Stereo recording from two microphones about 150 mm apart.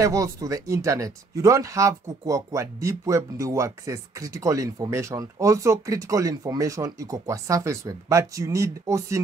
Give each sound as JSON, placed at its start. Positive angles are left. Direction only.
{"t": 0.0, "sound": "speech", "side_deg": -20}